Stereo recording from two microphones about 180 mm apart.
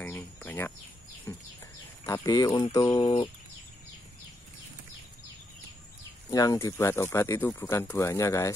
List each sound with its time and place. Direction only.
0.0 s a sound: 10° left (ahead or behind)
1.3 s bird: 10° left (ahead or behind)
2.0 s speech: 15° left (ahead or behind)
6.3 s speech: 20° left (ahead or behind)